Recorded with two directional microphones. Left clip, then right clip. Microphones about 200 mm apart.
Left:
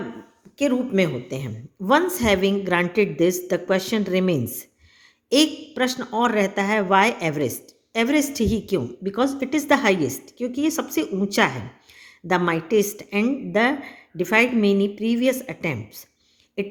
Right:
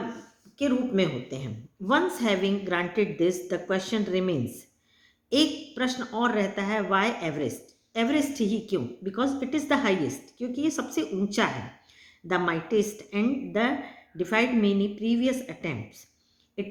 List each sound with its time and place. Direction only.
0.6 s a woman's voice: 40° left (ahead or behind)